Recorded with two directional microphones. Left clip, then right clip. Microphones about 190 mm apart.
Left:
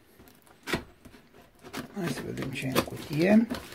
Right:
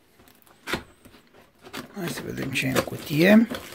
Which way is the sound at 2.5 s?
30° right (ahead or behind).